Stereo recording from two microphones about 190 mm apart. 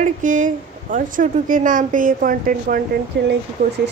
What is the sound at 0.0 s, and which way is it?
A woman's voice, 45° right (ahead or behind).